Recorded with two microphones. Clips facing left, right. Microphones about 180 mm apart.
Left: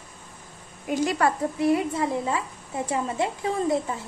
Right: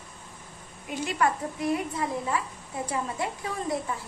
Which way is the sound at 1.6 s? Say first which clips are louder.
Left 6 dB; 25° left (ahead or behind).